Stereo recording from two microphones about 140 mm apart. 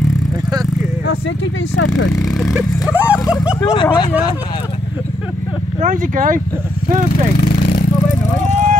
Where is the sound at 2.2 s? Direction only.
5° left (ahead or behind).